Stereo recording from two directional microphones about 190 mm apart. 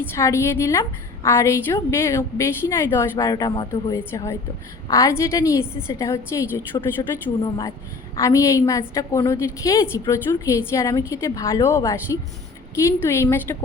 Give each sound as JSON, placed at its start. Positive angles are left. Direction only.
{"t": 0.2, "sound": "a woman's voice", "side_deg": 15}